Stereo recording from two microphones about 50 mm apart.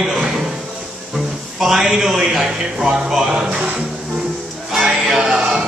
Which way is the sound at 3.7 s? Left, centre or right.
Centre.